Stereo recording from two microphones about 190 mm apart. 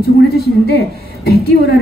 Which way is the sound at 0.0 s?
55° left (ahead or behind).